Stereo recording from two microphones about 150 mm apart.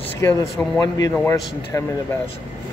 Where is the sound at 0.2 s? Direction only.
20° left (ahead or behind).